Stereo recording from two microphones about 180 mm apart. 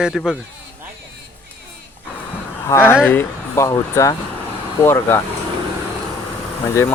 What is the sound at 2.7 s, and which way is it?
Speech, 15° left (ahead or behind).